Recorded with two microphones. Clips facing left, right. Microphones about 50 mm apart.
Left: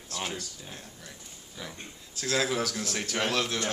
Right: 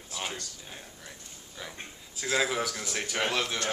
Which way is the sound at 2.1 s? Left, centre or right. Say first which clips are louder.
Even; centre.